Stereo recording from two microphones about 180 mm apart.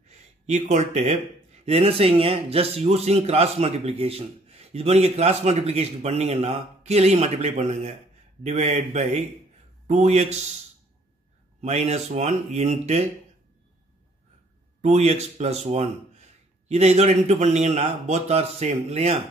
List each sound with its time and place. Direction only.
0.1 s speech: 40° right (ahead or behind)
11.6 s speech: 40° right (ahead or behind)
14.8 s speech: 40° right (ahead or behind)